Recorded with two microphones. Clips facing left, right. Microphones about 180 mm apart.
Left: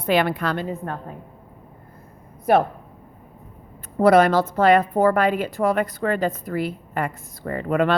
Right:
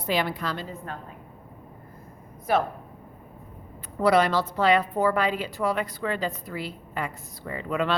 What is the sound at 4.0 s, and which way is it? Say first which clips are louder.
A woman's voice: left 6 dB; 50° left (ahead or behind).